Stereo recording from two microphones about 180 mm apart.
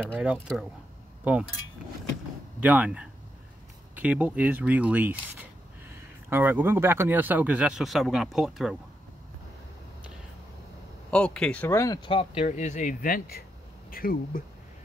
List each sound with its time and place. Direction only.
0.2 s speech: 5° right (ahead or behind)
2.6 s speech: 5° right (ahead or behind)
11.1 s speech: 5° left (ahead or behind); by 14.4 s 55° left (ahead or behind)